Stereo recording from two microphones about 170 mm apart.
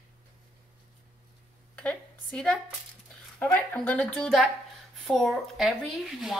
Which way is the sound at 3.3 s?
10° left (ahead or behind).